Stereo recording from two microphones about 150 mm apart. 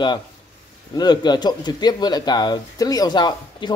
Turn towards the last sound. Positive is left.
turn(degrees=30)  # may be behind; listen again after turning